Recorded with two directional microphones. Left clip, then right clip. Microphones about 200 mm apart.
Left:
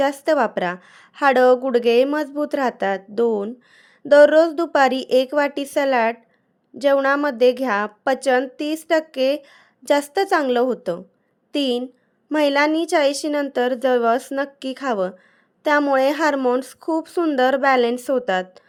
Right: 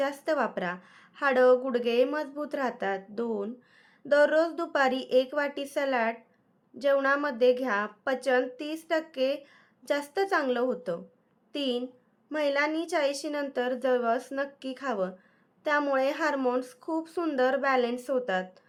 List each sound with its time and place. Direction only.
0.0 s a woman's voice: 40° left (ahead or behind)